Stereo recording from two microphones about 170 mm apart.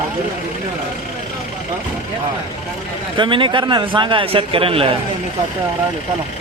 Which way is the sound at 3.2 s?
30° right (ahead or behind).